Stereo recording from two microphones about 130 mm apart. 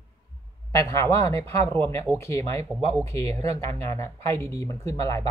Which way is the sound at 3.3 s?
55° right (ahead or behind).